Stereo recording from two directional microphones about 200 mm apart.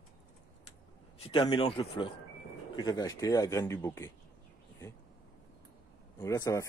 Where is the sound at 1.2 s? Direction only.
25° left (ahead or behind).